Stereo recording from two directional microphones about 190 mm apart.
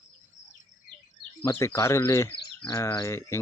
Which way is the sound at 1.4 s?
15° left (ahead or behind).